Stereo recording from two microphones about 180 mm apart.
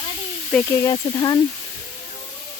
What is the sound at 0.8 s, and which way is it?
Speech, 20° left (ahead or behind).